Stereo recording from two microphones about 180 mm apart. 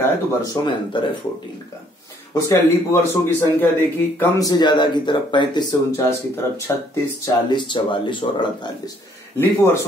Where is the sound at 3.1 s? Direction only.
10° left (ahead or behind).